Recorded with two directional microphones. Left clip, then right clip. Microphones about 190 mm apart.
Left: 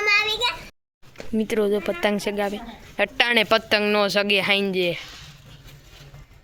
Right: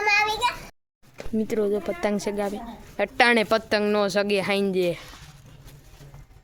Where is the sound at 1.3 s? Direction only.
10° left (ahead or behind).